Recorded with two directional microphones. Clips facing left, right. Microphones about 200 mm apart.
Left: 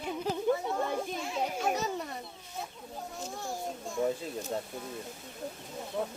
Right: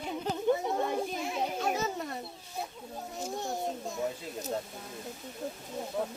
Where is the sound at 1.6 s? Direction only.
Centre (ahead or behind).